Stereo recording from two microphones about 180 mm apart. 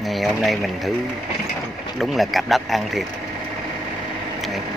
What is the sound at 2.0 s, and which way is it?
Speech, centre (ahead or behind).